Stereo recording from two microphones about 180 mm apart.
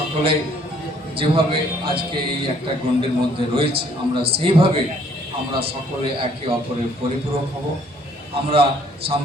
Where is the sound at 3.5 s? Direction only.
30° right (ahead or behind).